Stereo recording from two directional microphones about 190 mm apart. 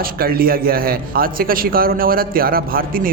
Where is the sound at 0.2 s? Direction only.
50° right (ahead or behind).